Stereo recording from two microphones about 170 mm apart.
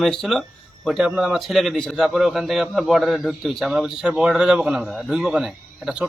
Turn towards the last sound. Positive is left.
turn(degrees=-5)  # may be behind; listen again after turning